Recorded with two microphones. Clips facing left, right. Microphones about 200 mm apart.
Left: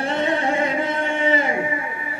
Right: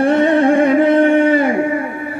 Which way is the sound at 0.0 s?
55° right (ahead or behind).